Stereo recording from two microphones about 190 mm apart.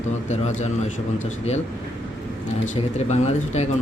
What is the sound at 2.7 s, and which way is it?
Speech, 35° left (ahead or behind).